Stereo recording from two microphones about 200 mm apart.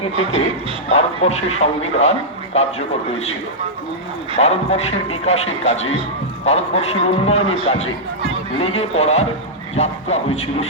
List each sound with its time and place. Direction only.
0.2 s speech: 30° left (ahead or behind)
4.4 s speech: 35° left (ahead or behind)